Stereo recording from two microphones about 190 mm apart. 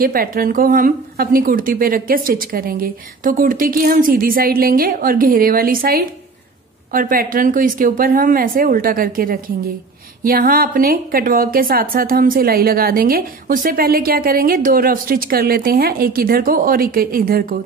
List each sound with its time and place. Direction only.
0.0 s a woman's voice: 50° right (ahead or behind)